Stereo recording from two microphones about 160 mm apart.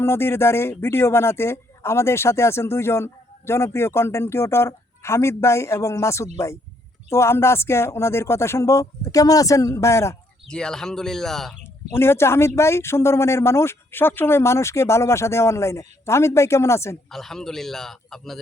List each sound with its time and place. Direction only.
0.0 s speech: 15° left (ahead or behind)
10.5 s a man's voice: 5° left (ahead or behind)
11.9 s speech: 15° left (ahead or behind)
17.1 s a man's voice: centre (ahead or behind)